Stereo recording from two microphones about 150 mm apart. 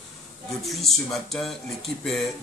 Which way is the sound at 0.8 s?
Centre (ahead or behind).